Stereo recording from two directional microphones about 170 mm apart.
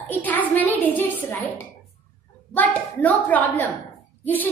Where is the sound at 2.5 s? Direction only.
10° left (ahead or behind).